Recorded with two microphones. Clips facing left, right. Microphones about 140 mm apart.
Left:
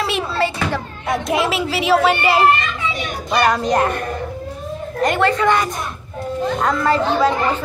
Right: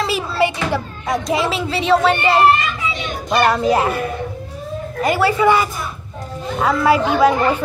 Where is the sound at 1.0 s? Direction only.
Centre (ahead or behind).